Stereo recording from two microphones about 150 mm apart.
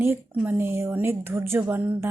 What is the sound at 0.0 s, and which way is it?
A woman's voice, 15° right (ahead or behind).